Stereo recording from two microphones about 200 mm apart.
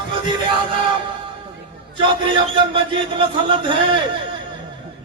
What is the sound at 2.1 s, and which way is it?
A man's voice, 25° right (ahead or behind).